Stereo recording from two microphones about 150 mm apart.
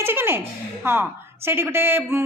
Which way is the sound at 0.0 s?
15° right (ahead or behind).